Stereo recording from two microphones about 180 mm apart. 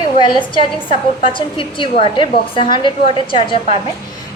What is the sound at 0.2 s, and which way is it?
A woman's voice, 25° left (ahead or behind).